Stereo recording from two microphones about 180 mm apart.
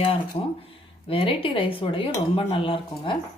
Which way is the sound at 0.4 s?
35° left (ahead or behind).